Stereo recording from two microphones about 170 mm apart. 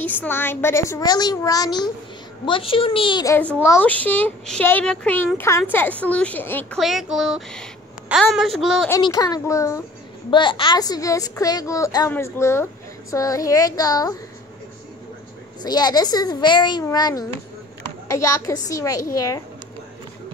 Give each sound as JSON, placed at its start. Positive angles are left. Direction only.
{"t": 0.0, "sound": "a child's voice", "side_deg": 10}
{"t": 3.6, "sound": "a child's voice", "side_deg": 10}
{"t": 6.8, "sound": "speech", "side_deg": 0}
{"t": 9.0, "sound": "a child's voice", "side_deg": 20}
{"t": 10.3, "sound": "a child's voice", "side_deg": 30}
{"t": 15.6, "sound": "a child's voice", "side_deg": 25}